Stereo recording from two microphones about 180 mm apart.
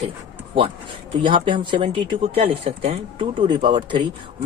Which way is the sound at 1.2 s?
30° right (ahead or behind).